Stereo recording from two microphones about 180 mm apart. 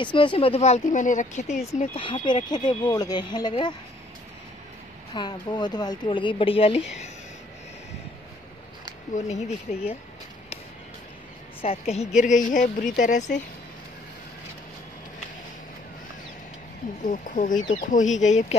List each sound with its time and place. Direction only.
0.0 s speech: 25° left (ahead or behind); by 1.6 s 45° left (ahead or behind)
1.8 s speech: 30° left (ahead or behind)
5.1 s speech: 25° left (ahead or behind)
9.1 s speech: 40° left (ahead or behind)
11.6 s speech: 35° left (ahead or behind)
17.0 s speech: 45° left (ahead or behind)